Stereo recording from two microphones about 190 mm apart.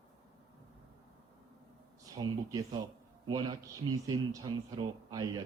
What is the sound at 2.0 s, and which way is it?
Speech, 20° right (ahead or behind).